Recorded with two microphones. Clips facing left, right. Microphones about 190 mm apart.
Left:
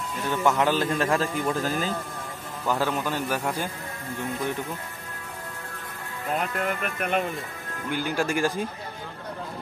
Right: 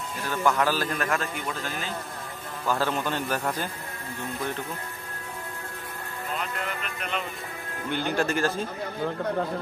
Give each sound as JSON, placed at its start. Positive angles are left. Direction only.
{"t": 0.4, "sound": "a man's voice", "side_deg": 20}
{"t": 2.6, "sound": "a man's voice", "side_deg": 10}
{"t": 6.3, "sound": "speech", "side_deg": 50}
{"t": 7.9, "sound": "a man's voice", "side_deg": 5}